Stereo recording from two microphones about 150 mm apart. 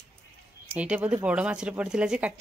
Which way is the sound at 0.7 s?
10° right (ahead or behind).